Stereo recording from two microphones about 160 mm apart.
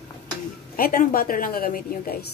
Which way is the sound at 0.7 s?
65° left (ahead or behind).